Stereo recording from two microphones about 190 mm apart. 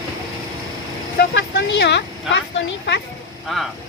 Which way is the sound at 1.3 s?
65° left (ahead or behind).